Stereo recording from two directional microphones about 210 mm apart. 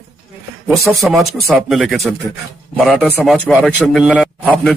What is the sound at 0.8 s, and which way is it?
Speech, centre (ahead or behind).